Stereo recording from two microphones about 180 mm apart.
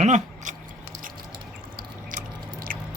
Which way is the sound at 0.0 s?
40° right (ahead or behind).